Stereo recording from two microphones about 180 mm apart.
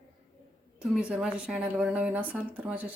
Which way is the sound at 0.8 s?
5° right (ahead or behind).